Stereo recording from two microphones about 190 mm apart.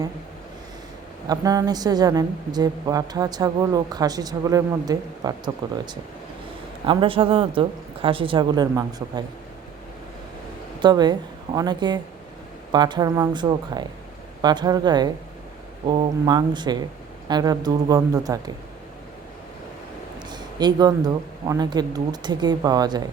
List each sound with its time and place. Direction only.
1.3 s a woman's voice: 20° right (ahead or behind)
10.8 s a woman's voice: 25° right (ahead or behind)
20.3 s a woman's voice: 20° right (ahead or behind)